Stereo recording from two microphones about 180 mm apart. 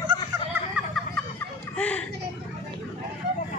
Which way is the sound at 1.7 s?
5° left (ahead or behind).